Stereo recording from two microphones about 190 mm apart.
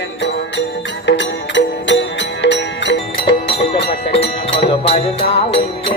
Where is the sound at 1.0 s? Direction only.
70° left (ahead or behind).